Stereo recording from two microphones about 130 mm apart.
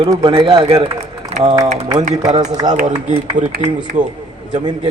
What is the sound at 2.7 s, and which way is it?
Speech, 70° right (ahead or behind).